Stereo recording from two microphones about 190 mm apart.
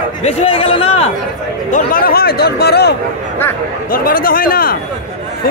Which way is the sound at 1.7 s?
45° left (ahead or behind).